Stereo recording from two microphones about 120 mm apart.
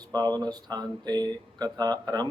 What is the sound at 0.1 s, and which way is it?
Speech, 35° right (ahead or behind).